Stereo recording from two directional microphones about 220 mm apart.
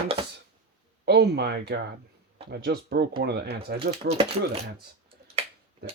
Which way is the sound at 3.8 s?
25° right (ahead or behind).